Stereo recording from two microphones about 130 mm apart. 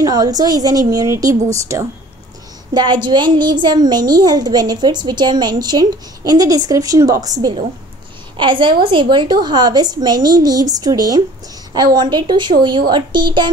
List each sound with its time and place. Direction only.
0.0 s a woman's voice: 30° right (ahead or behind)
2.7 s a woman's voice: 35° right (ahead or behind)
8.4 s a woman's voice: 40° right (ahead or behind)